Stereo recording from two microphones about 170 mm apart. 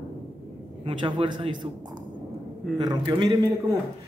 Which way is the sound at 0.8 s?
30° right (ahead or behind).